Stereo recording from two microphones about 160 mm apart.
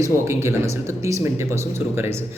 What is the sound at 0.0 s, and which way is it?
Speech, 15° right (ahead or behind).